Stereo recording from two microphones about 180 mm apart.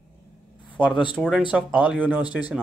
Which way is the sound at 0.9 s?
5° right (ahead or behind).